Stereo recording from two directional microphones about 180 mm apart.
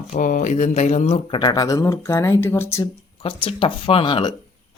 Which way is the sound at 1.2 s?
25° left (ahead or behind).